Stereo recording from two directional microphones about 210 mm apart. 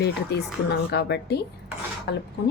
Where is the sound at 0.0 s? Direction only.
50° left (ahead or behind).